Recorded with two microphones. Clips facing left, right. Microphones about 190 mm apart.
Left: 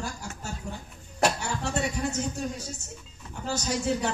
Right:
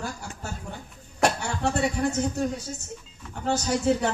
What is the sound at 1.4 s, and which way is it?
Speech, 60° right (ahead or behind).